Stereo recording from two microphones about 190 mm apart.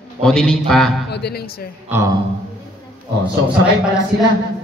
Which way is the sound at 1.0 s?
60° left (ahead or behind).